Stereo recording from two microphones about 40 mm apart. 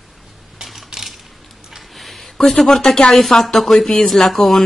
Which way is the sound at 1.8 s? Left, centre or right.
Centre.